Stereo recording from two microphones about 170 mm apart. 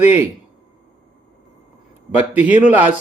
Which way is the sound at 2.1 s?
10° right (ahead or behind).